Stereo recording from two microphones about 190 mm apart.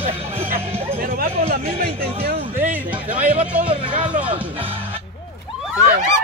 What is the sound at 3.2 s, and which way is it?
Music, 40° right (ahead or behind).